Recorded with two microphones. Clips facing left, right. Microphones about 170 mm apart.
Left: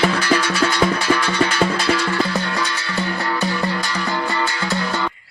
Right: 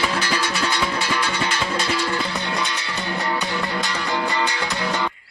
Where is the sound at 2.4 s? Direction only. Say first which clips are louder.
Left 2 dB; 20° right (ahead or behind).